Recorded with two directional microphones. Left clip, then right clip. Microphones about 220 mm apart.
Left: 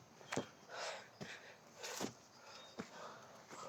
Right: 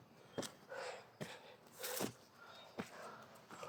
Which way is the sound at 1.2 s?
45° right (ahead or behind).